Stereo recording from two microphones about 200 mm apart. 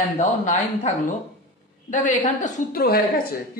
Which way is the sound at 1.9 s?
40° left (ahead or behind).